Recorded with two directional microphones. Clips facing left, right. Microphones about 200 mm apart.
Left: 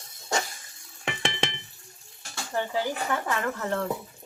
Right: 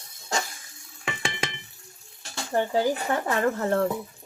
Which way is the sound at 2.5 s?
40° right (ahead or behind).